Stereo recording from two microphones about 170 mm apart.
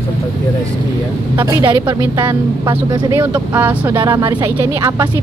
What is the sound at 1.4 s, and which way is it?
Speech, 25° right (ahead or behind).